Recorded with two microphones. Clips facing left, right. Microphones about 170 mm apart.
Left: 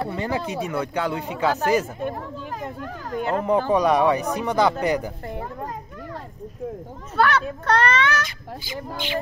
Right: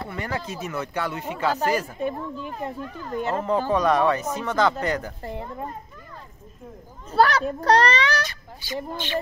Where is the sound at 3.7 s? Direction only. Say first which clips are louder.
Left 1 dB; 10° left (ahead or behind).